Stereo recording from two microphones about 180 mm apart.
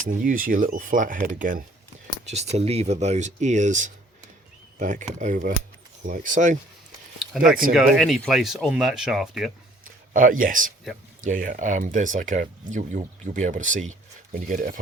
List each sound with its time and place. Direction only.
0.0 s speech: 50° right (ahead or behind)
7.2 s speech: centre (ahead or behind)
10.1 s speech: 50° right (ahead or behind)